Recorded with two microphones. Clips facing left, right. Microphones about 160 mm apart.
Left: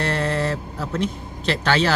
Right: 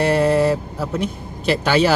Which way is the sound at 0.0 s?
10° right (ahead or behind).